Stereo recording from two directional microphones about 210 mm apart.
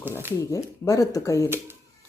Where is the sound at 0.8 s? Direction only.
15° left (ahead or behind).